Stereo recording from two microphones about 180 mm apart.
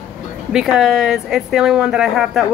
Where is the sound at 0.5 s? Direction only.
5° right (ahead or behind).